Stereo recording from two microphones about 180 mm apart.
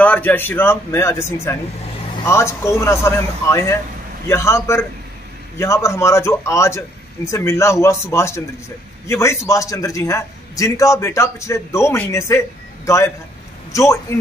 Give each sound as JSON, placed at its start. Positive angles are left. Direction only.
{"t": 0.0, "sound": "a man's voice", "side_deg": 10}